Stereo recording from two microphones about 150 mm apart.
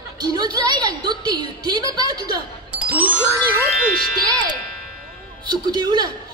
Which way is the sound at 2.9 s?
10° right (ahead or behind).